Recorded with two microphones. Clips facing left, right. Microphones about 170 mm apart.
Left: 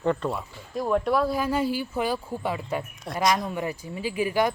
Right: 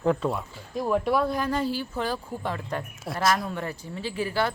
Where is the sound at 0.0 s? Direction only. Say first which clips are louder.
Right 1 dB; centre (ahead or behind).